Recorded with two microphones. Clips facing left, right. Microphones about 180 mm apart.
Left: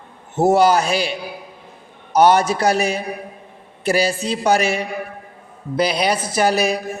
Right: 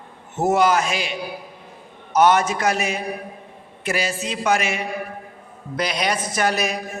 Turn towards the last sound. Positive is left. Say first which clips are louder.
# left 5 dB
turn(degrees=30)  # may be behind; listen again after turning